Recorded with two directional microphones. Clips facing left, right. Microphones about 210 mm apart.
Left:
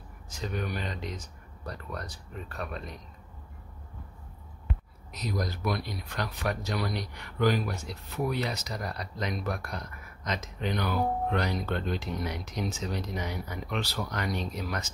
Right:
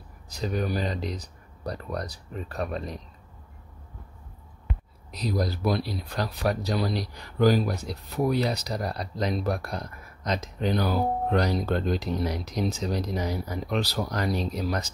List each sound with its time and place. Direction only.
0.3 s speech: 35° right (ahead or behind)
5.1 s speech: 35° right (ahead or behind)